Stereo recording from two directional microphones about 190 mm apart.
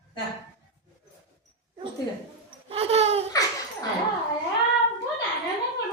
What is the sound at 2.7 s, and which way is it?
Laughter, 30° right (ahead or behind).